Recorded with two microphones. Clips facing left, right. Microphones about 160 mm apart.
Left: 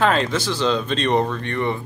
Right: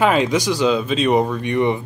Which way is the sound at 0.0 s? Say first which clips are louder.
Right 3 dB; 10° right (ahead or behind).